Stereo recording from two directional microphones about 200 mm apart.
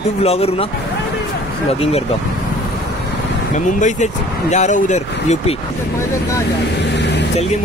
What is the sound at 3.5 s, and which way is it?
Speech, 40° left (ahead or behind).